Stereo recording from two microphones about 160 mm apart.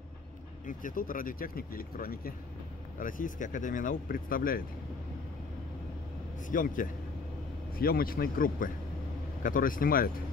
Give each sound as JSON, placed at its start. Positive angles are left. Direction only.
{"t": 0.7, "sound": "speech", "side_deg": 55}
{"t": 6.5, "sound": "speech", "side_deg": 55}